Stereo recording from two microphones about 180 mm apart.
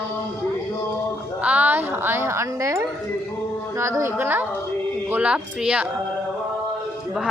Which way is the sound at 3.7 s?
15° right (ahead or behind).